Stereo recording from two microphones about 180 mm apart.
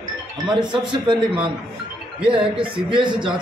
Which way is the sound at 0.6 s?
25° right (ahead or behind).